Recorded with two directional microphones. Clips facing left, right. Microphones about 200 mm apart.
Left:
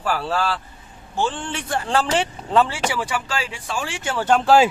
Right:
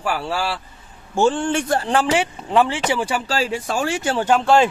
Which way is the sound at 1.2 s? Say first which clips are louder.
Right 7 dB; 45° right (ahead or behind).